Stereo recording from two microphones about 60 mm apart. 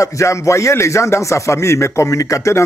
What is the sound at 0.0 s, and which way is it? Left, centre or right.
Speech, left.